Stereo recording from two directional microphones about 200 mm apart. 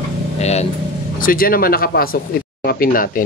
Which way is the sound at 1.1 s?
45° left (ahead or behind).